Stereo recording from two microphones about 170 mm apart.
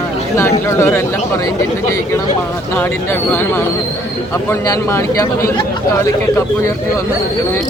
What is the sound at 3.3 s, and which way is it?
A man's voice, 10° left (ahead or behind).